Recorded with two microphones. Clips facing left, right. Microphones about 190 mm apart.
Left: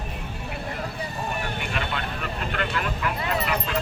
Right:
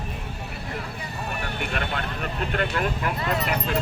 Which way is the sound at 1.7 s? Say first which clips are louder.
Right 1 dB; 50° right (ahead or behind).